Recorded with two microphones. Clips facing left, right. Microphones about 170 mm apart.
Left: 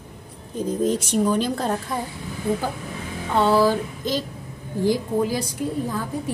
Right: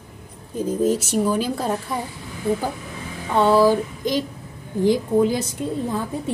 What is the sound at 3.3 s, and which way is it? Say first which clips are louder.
A woman's voice: right 2 dB; 15° right (ahead or behind).